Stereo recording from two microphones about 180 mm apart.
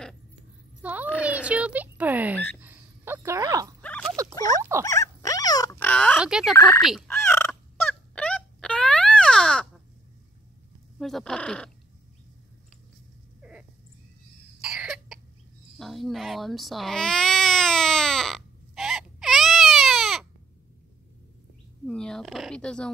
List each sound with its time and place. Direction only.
0.8 s a child's voice: 10° right (ahead or behind)
1.2 s a sound: 5° right (ahead or behind)
3.8 s a sound: 5° left (ahead or behind)
4.8 s dog: 15° left (ahead or behind)
5.8 s oink: 5° left (ahead or behind)
6.1 s speech: 5° right (ahead or behind)
6.5 s fowl: 20° left (ahead or behind)
6.8 s speech: centre (ahead or behind)
7.2 s fowl: 10° left (ahead or behind)
11.0 s speech: centre (ahead or behind)
13.4 s cat: 5° right (ahead or behind)
14.6 s cough: 5° right (ahead or behind)
15.8 s baby cry: centre (ahead or behind)
21.8 s speech: 5° left (ahead or behind)